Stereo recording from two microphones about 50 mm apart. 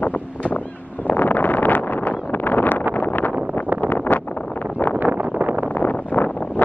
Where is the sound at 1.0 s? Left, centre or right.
Left.